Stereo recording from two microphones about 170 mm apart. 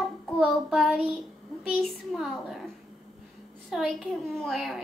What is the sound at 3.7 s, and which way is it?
A child's voice, 5° right (ahead or behind).